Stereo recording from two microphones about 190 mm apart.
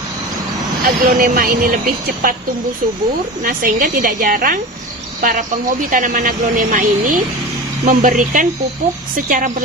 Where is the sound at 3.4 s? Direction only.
50° right (ahead or behind).